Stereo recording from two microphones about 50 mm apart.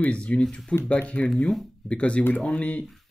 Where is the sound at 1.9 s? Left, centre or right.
Left.